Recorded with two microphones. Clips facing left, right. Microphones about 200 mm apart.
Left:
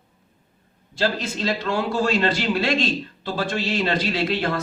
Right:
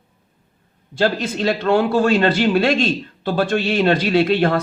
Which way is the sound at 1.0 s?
55° right (ahead or behind).